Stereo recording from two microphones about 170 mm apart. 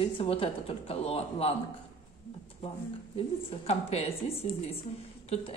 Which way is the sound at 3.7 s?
40° left (ahead or behind).